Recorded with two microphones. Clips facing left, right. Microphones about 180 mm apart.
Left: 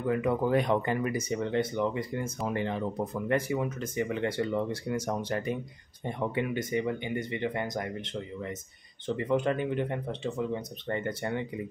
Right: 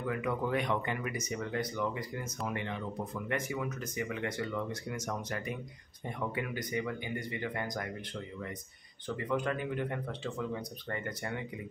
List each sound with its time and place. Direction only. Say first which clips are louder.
0.0 s speech: left 6 dB; 30° left (ahead or behind)